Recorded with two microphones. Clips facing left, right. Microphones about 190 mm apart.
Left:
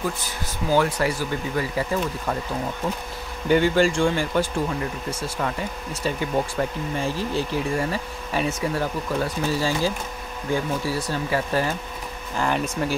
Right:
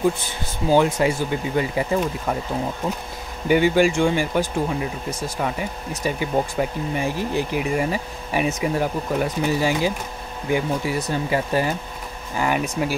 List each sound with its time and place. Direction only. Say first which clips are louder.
0.7 s speech: right 4 dB; 20° right (ahead or behind)
3.4 s speech: right 2 dB; 15° right (ahead or behind)